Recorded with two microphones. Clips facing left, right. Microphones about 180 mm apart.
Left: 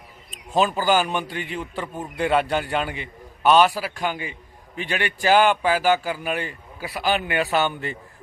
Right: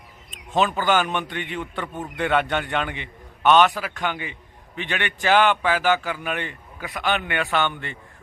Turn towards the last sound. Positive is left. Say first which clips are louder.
# left 2 dB
turn(degrees=35)  # may be behind; listen again after turning